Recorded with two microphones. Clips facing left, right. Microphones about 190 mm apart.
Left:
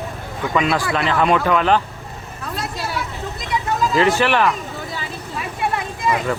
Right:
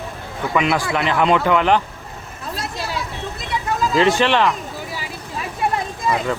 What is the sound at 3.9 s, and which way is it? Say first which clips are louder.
Speech: right 1 dB; 20° right (ahead or behind).